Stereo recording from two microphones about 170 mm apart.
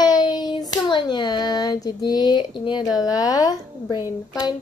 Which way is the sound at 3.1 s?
20° left (ahead or behind).